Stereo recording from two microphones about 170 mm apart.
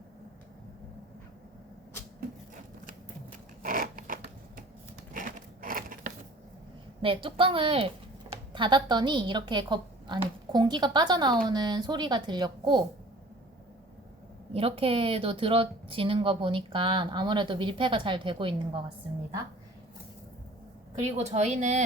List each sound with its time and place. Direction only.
3.6 s zipper: 55° right (ahead or behind)
5.6 s a sound: 50° right (ahead or behind)
7.0 s a woman's voice: 30° right (ahead or behind)
14.5 s speech: 35° right (ahead or behind)
21.0 s speech: 40° right (ahead or behind)